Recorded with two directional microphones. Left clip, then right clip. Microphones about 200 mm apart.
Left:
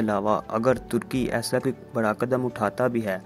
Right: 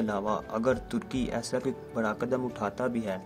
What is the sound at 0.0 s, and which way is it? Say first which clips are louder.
Speech: left 6 dB; 25° left (ahead or behind).